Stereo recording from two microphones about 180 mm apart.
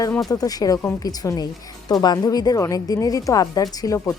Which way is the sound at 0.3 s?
20° left (ahead or behind).